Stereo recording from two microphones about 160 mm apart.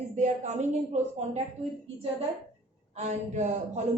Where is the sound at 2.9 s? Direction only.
45° right (ahead or behind).